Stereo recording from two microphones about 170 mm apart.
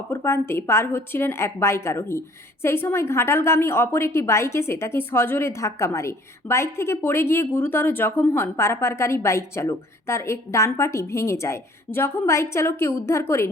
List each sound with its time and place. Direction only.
0.1 s a woman's voice: 15° left (ahead or behind)